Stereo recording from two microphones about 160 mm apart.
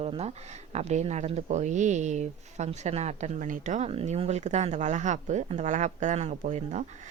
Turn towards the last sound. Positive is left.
turn(degrees=-50)  # may be behind; listen again after turning